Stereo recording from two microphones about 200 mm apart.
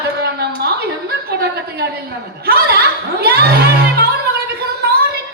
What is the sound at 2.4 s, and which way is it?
Speech, 50° right (ahead or behind).